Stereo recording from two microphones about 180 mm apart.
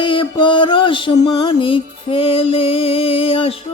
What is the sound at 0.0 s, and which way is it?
Music, 25° left (ahead or behind).